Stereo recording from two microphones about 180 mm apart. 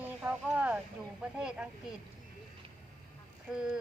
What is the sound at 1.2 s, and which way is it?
Speech, 5° right (ahead or behind).